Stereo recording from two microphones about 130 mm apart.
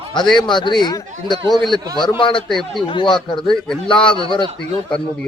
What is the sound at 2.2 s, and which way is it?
Speech, 40° left (ahead or behind).